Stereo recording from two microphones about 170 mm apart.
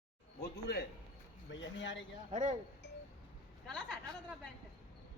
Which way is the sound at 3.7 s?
Centre (ahead or behind).